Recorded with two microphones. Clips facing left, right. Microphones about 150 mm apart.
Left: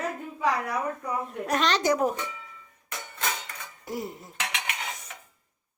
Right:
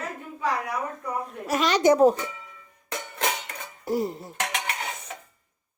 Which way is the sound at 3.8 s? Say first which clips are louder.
Right 8 dB; 35° right (ahead or behind).